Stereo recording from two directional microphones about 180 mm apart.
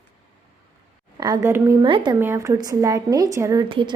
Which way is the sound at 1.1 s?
20° right (ahead or behind).